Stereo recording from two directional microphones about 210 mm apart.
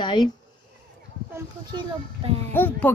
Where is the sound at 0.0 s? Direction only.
20° left (ahead or behind).